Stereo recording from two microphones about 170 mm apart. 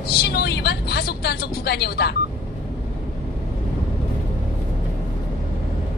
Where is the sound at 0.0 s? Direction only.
70° left (ahead or behind).